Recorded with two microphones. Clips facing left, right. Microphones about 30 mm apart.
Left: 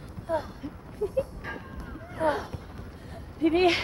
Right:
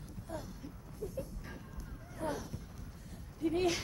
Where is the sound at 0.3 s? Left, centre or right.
Left.